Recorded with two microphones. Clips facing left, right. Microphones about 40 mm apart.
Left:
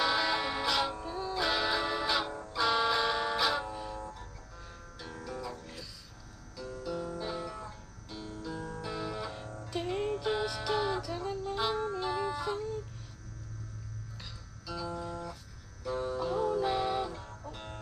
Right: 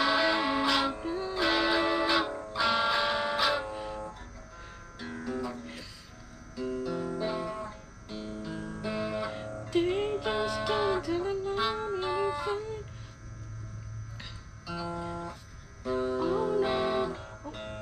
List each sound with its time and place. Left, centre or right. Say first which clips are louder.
0.0 s music: right 3 dB; right
14.7 s music: right 2 dB; right